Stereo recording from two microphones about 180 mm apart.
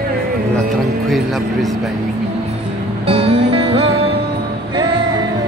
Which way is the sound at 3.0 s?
30° right (ahead or behind).